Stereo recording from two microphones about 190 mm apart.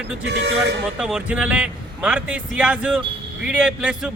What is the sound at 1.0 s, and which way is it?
A man's voice, 5° right (ahead or behind).